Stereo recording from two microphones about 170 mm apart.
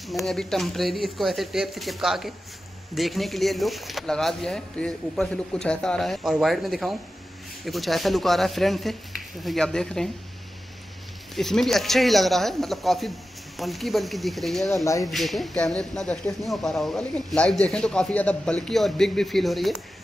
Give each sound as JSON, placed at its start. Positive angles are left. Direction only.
{"t": 0.0, "sound": "speech", "side_deg": 0}
{"t": 11.3, "sound": "speech", "side_deg": 0}